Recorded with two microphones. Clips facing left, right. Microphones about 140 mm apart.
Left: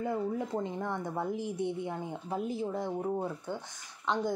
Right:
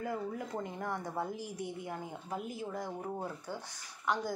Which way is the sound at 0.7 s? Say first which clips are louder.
Left 3 dB; 20° left (ahead or behind).